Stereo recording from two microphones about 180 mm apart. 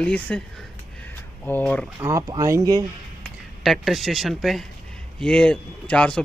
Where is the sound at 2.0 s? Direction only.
15° right (ahead or behind).